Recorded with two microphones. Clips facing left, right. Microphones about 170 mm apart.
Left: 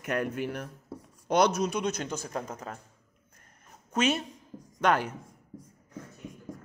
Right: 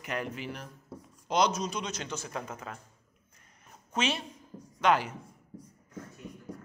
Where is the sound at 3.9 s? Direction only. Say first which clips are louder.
Left 4 dB; 45° left (ahead or behind).